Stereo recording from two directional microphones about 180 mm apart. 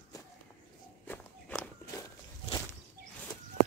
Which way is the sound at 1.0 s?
10° left (ahead or behind).